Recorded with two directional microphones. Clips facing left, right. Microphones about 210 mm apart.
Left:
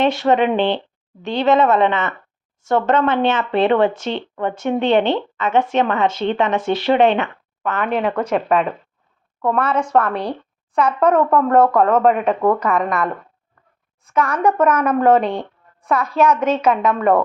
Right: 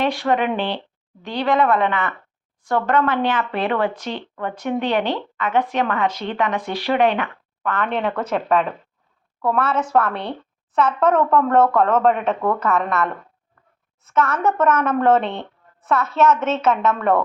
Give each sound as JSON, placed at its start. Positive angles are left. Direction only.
{"t": 0.0, "sound": "speech", "side_deg": 25}
{"t": 7.9, "sound": "a woman's voice", "side_deg": 5}
{"t": 10.8, "sound": "a woman's voice", "side_deg": 10}
{"t": 14.1, "sound": "a woman's voice", "side_deg": 15}